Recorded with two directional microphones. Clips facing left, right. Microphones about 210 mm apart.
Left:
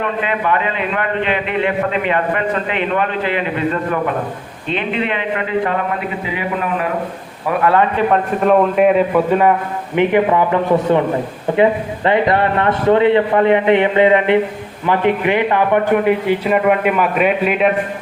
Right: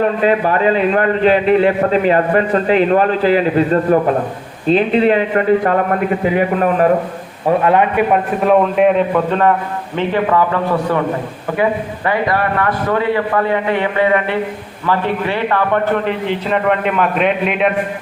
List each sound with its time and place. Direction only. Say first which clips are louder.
0.0 s a man's voice: right 6 dB; 35° right (ahead or behind)
7.4 s a man's voice: right 2 dB; 20° right (ahead or behind)
8.4 s a man's voice: even; centre (ahead or behind)